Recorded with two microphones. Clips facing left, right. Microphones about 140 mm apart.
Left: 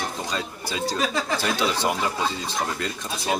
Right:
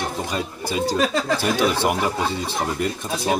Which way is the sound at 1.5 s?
55° right (ahead or behind).